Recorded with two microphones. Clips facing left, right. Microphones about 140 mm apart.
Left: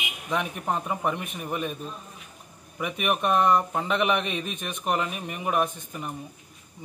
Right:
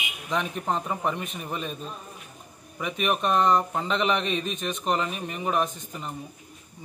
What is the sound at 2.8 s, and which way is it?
Speech, 10° left (ahead or behind).